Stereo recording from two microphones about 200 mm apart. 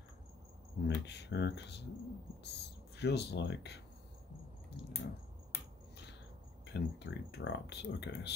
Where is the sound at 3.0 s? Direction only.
55° left (ahead or behind).